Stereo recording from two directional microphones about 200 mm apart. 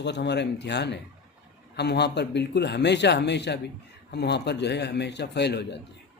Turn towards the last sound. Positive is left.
turn(degrees=60)  # may be behind; listen again after turning